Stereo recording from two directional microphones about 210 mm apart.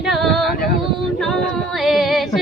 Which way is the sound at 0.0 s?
Centre (ahead or behind).